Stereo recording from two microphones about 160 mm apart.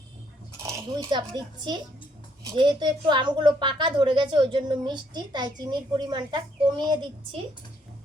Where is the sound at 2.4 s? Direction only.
25° right (ahead or behind).